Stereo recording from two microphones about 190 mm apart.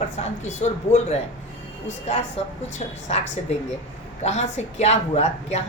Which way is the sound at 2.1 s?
35° left (ahead or behind).